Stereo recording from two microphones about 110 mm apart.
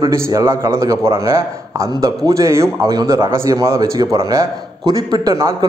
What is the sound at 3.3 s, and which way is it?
A man's voice, 25° right (ahead or behind).